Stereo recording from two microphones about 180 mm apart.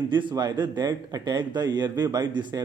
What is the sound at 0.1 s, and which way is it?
A man's voice, 25° right (ahead or behind).